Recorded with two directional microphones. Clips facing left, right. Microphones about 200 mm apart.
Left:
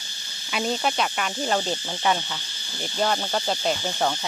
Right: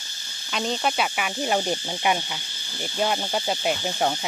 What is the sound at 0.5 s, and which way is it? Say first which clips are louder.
Cricket: even; 5° left (ahead or behind).